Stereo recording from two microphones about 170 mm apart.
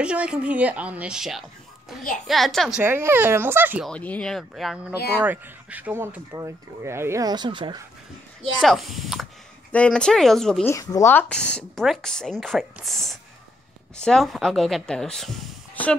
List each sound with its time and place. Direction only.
0.0 s speech: 5° right (ahead or behind)
2.8 s speech: 15° right (ahead or behind)
3.8 s speech: 5° left (ahead or behind); by 7.8 s 25° right (ahead or behind)
8.5 s speech: centre (ahead or behind)
10.7 s speech: 20° left (ahead or behind)